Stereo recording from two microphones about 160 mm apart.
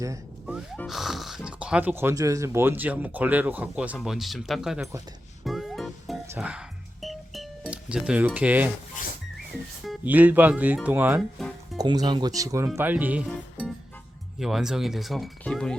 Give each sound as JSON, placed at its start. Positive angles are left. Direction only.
{"t": 0.4, "sound": "music", "side_deg": -5}
{"t": 0.9, "sound": "speech", "side_deg": 0}
{"t": 5.5, "sound": "music", "side_deg": 0}
{"t": 10.1, "sound": "speech", "side_deg": -10}
{"t": 11.3, "sound": "music", "side_deg": 0}
{"t": 11.8, "sound": "speech", "side_deg": -25}